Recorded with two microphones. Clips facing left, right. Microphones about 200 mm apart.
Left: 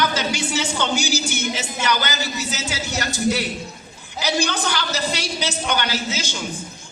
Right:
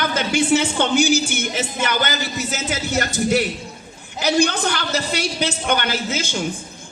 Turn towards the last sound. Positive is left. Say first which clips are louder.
# right 3 dB
turn(degrees=-50)  # may be behind; listen again after turning